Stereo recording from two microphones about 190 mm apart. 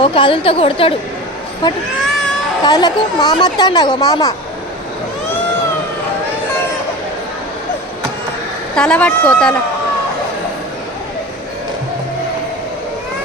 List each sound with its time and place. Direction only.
0.0 s a woman's voice: 25° left (ahead or behind)
2.6 s a woman's voice: 20° left (ahead or behind)
8.7 s a woman's voice: 5° left (ahead or behind)